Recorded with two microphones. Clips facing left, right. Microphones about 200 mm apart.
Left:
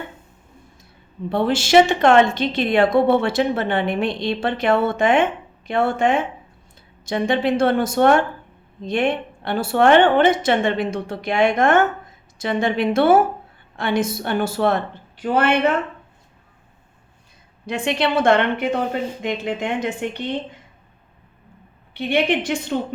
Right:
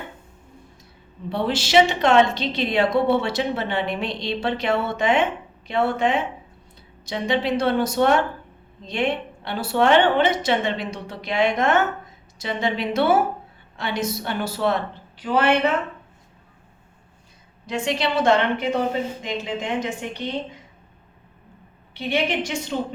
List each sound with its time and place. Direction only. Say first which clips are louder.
1.3 s a woman's voice: left 4 dB; 50° left (ahead or behind)
17.7 s a woman's voice: left 3 dB; 60° left (ahead or behind)
21.9 s a woman's voice: left 4 dB; 55° left (ahead or behind)